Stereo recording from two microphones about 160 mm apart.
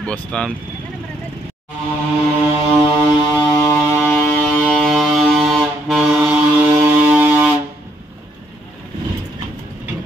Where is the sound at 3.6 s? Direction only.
20° left (ahead or behind).